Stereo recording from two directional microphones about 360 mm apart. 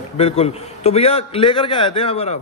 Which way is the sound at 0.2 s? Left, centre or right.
Centre.